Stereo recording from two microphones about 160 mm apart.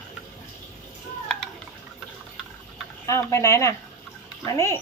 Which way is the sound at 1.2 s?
5° left (ahead or behind).